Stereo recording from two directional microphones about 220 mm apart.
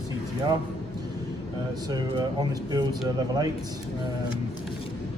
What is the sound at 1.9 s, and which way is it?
Speech, 20° right (ahead or behind).